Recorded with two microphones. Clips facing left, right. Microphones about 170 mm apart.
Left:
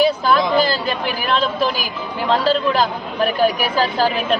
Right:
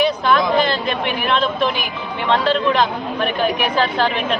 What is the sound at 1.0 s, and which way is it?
A man's voice, centre (ahead or behind).